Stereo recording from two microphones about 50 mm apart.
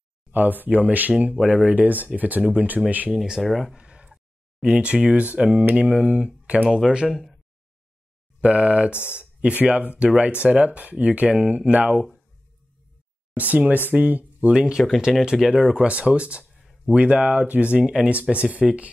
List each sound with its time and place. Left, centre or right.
0.3 s speech: right; by 1.8 s centre
1.8 s speech: right
3.1 s speech: centre
3.7 s a sound: right
4.1 s speech: centre
7.1 s speech: centre
8.4 s speech: right
11.7 s speech: right
13.4 s speech: right
14.5 s speech: centre